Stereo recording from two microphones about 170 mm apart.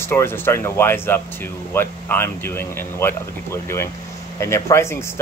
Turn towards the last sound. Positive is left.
turn(degrees=15)  # may be behind; listen again after turning